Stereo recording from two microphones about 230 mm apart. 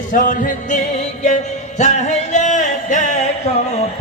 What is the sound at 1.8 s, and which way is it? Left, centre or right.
Music, left.